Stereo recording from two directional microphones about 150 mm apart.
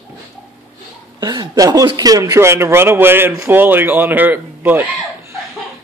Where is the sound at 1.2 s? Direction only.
25° right (ahead or behind); by 4.8 s 10° right (ahead or behind).